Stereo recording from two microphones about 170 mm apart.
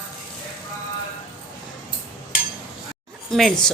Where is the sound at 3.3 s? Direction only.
Centre (ahead or behind).